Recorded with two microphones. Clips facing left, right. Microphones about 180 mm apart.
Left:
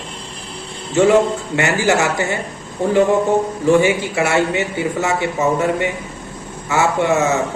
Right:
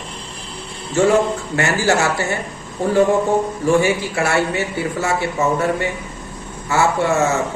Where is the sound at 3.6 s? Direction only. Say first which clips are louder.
Left 3 dB; 20° left (ahead or behind).